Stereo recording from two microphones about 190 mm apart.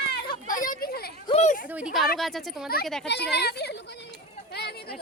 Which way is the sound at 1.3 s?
35° left (ahead or behind).